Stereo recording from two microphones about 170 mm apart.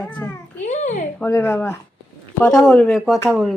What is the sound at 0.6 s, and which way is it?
Speech, 45° left (ahead or behind).